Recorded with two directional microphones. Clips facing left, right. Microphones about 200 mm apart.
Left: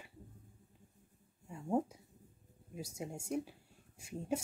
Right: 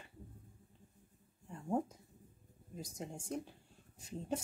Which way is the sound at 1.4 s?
5° left (ahead or behind).